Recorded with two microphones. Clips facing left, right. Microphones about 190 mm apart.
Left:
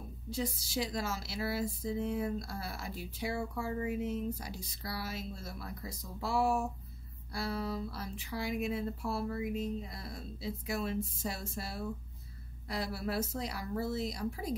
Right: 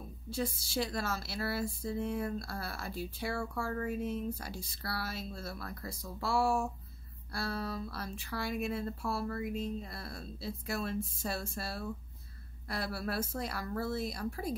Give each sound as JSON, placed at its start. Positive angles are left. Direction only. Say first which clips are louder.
{"t": 0.3, "sound": "a woman's voice", "louder": "right 1 dB", "side_deg": 20}